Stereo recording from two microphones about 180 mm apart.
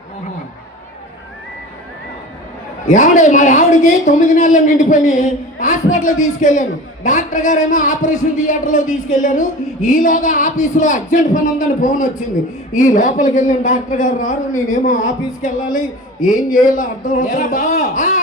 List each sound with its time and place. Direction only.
2.9 s speech: 45° left (ahead or behind)
6.1 s speech: 90° left
6.4 s speech: 45° left (ahead or behind)